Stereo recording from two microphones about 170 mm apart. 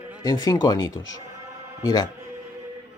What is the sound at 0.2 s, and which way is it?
A man's voice, 20° left (ahead or behind).